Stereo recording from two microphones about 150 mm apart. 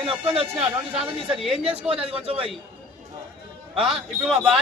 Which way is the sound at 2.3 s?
35° right (ahead or behind).